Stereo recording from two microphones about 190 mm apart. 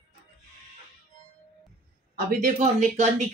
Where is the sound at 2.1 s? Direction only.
40° right (ahead or behind).